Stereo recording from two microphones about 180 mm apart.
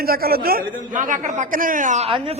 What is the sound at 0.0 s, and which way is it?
A man's voice, 55° right (ahead or behind).